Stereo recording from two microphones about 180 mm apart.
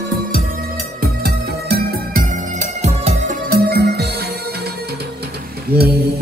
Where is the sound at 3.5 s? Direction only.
60° right (ahead or behind).